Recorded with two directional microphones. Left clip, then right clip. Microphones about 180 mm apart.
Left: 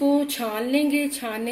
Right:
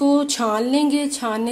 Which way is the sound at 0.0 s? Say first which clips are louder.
Right 4 dB; 50° right (ahead or behind).